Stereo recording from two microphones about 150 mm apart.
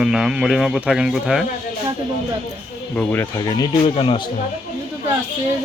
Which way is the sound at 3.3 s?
25° left (ahead or behind).